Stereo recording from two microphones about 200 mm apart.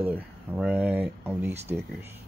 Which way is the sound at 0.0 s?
10° right (ahead or behind).